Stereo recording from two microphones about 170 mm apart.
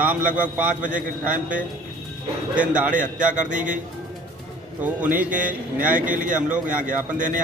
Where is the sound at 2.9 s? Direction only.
50° right (ahead or behind).